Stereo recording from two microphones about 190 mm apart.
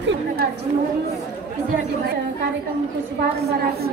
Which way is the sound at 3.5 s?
55° right (ahead or behind).